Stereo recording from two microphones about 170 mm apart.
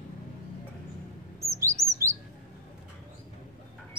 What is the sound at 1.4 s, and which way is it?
Chirp, 15° right (ahead or behind).